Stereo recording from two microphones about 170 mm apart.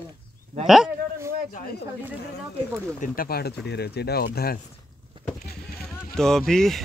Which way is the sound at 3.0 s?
55° left (ahead or behind).